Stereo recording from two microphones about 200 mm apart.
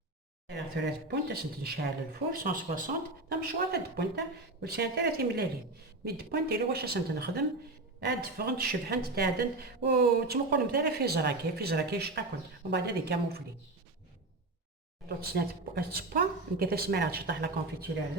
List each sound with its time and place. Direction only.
0.4 s a woman's voice: 55° right (ahead or behind)
15.2 s a woman's voice: 50° right (ahead or behind)